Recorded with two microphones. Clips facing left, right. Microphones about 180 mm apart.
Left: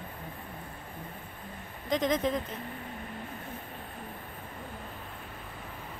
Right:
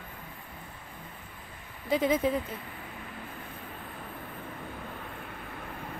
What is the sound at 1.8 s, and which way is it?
Speech, 10° right (ahead or behind).